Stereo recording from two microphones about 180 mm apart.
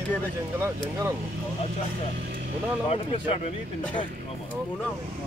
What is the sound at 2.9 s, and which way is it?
Speech, 35° left (ahead or behind).